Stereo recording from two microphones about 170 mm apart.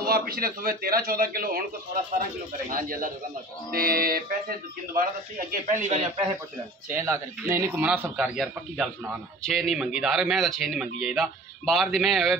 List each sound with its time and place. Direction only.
0.0 s speech: 60° right (ahead or behind)
2.7 s speech: 55° right (ahead or behind)
6.9 s a man's voice: 15° right (ahead or behind); by 12.4 s centre (ahead or behind)